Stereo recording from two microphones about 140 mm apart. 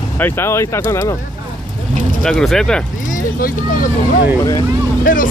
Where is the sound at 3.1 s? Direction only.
80° left.